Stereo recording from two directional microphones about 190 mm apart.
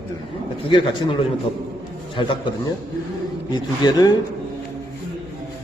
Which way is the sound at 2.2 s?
25° left (ahead or behind).